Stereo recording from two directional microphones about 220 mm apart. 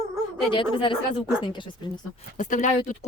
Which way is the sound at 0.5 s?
20° left (ahead or behind).